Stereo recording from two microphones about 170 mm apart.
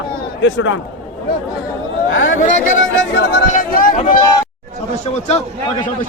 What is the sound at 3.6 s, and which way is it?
Speech, 55° left (ahead or behind).